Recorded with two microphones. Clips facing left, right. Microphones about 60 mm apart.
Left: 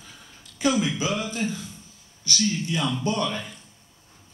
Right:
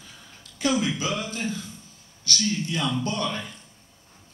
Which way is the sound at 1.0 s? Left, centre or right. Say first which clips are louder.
Left 2 dB; left.